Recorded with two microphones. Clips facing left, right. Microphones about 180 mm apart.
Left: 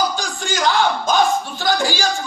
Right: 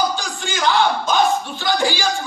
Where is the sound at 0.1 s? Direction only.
45° left (ahead or behind).